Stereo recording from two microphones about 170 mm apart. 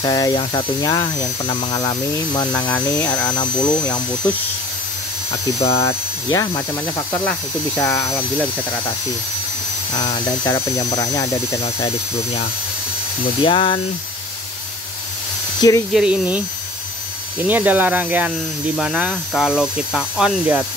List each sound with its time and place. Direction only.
0.0 s speech: 20° left (ahead or behind)
5.6 s speech: 35° left (ahead or behind)
6.3 s speech: 20° left (ahead or behind)
7.2 s speech: 5° left (ahead or behind)
7.9 s speech: 15° left (ahead or behind)
9.9 s speech: 25° left (ahead or behind)
13.4 s speech: 30° left (ahead or behind)
15.9 s speech: 5° right (ahead or behind)
17.5 s speech: 10° right (ahead or behind)